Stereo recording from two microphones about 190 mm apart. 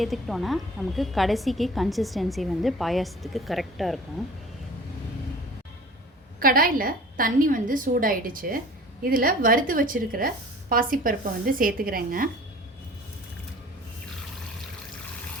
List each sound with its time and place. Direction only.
0.0 s a woman's voice: centre (ahead or behind)
6.4 s a woman's voice: 50° right (ahead or behind)